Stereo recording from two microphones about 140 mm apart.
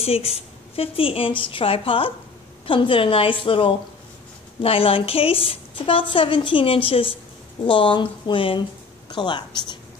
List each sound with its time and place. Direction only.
0.0 s a woman's voice: 45° left (ahead or behind)